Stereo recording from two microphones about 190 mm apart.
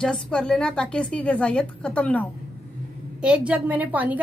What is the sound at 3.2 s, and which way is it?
A woman's voice, 5° right (ahead or behind).